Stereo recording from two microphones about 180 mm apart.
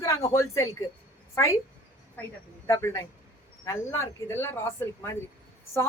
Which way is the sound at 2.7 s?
15° left (ahead or behind).